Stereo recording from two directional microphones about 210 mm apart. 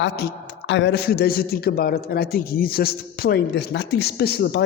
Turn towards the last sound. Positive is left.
turn(degrees=50)  # may be behind; listen again after turning